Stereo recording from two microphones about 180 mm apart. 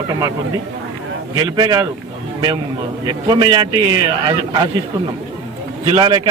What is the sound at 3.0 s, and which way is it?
A man's voice, 25° right (ahead or behind).